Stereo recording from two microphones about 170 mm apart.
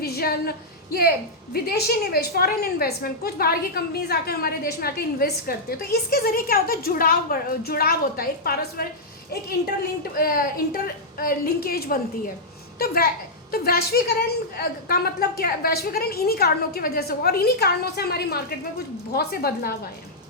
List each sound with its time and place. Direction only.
0.0 s a sound: 65° left (ahead or behind)
1.5 s a woman's voice: 65° left (ahead or behind)
10.0 s a woman's voice: 60° left (ahead or behind)